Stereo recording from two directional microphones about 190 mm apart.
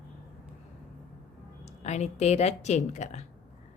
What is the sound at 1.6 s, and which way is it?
A woman's voice, 35° left (ahead or behind).